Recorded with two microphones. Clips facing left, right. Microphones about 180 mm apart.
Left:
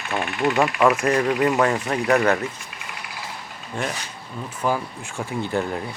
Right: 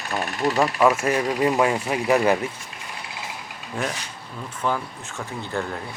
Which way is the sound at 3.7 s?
5° right (ahead or behind).